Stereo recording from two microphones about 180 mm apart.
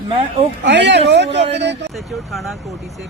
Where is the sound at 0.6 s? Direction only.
75° right (ahead or behind).